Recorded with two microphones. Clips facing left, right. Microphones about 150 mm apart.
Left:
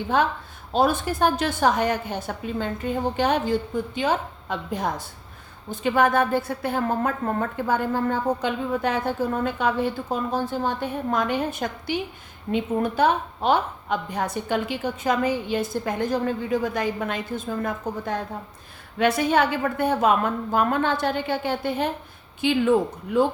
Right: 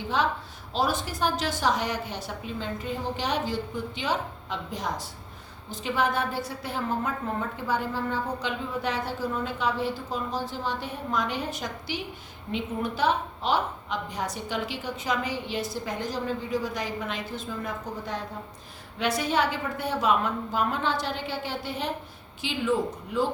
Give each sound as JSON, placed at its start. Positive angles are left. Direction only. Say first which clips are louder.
{"t": 0.1, "sound": "a woman's voice", "louder": "left 4 dB", "side_deg": 55}